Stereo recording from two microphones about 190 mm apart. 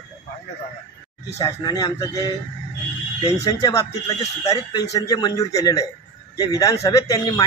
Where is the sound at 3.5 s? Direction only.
20° left (ahead or behind).